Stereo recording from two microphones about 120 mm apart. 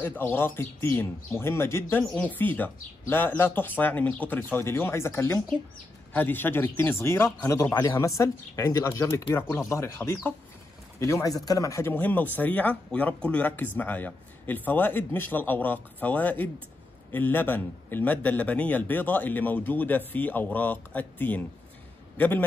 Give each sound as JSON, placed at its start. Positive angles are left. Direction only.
{"t": 0.0, "sound": "a man's voice", "side_deg": 15}
{"t": 11.0, "sound": "speech", "side_deg": 25}
{"t": 11.9, "sound": "a man's voice", "side_deg": 15}